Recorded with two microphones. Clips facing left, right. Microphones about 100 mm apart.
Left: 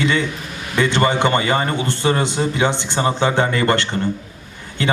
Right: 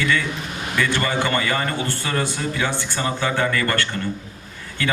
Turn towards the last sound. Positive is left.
turn(degrees=20)  # may be behind; listen again after turning